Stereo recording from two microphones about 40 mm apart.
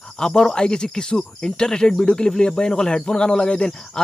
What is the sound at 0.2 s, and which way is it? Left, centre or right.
Speech, centre.